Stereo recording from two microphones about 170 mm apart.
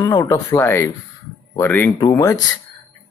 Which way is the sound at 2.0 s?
20° left (ahead or behind).